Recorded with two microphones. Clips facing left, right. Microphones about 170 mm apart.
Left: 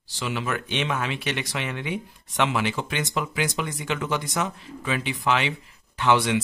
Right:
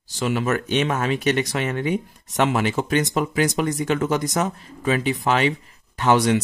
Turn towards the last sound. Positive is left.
turn(degrees=-40)  # may be behind; listen again after turning